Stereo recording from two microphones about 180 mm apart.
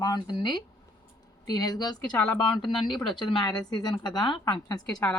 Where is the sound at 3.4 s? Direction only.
25° left (ahead or behind).